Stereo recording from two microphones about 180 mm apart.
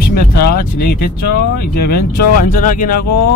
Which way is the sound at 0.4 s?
55° left (ahead or behind).